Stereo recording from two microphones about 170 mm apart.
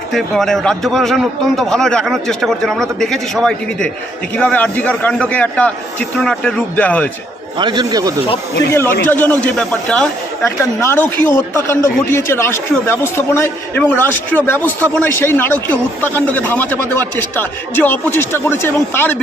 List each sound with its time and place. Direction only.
0.1 s a man's voice: centre (ahead or behind)
7.6 s a man's voice: 25° right (ahead or behind)
8.7 s a man's voice: 15° left (ahead or behind)
10.4 s a man's voice: 15° left (ahead or behind)